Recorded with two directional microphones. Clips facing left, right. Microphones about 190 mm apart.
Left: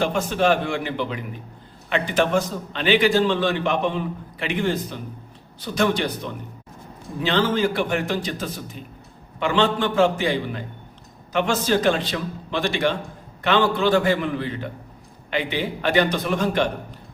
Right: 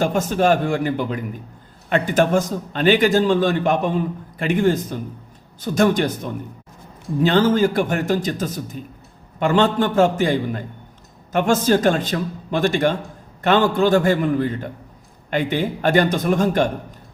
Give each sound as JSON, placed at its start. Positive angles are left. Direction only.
{"t": 0.0, "sound": "a man's voice", "side_deg": -45}